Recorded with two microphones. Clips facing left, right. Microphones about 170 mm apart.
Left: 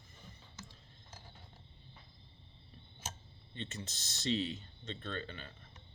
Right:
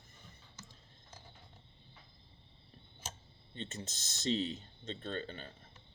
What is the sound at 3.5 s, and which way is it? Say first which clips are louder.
Speech: right 1 dB; 45° right (ahead or behind).